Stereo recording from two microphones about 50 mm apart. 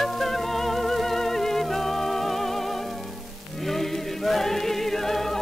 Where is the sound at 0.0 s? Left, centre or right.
Centre.